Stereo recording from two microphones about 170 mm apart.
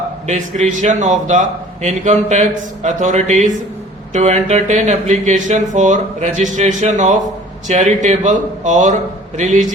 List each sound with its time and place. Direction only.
0.3 s a man's voice: 40° right (ahead or behind)